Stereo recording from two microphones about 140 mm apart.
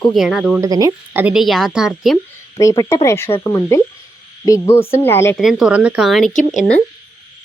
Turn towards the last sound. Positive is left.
turn(degrees=60)  # may be behind; listen again after turning